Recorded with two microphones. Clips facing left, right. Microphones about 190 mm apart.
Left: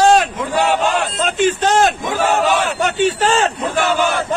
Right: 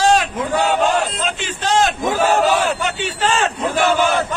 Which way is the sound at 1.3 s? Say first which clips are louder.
Left 5 dB; 50° left (ahead or behind).